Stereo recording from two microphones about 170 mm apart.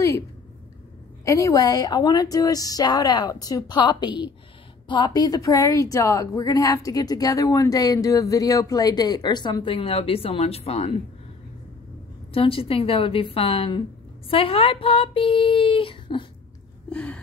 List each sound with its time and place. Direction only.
1.2 s a woman's voice: 20° left (ahead or behind); by 11.0 s 35° left (ahead or behind)
12.3 s speech: 35° left (ahead or behind)
16.9 s gasp: 5° left (ahead or behind)